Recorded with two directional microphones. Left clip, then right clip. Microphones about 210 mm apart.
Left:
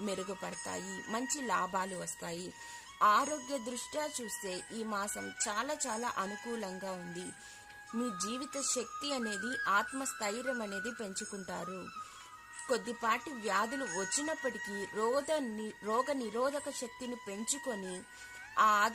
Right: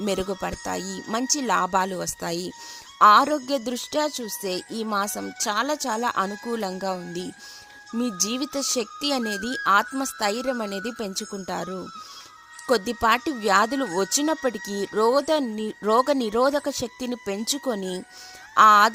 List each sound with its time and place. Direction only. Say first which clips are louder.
0.0 s speech: right 12 dB; 45° right (ahead or behind)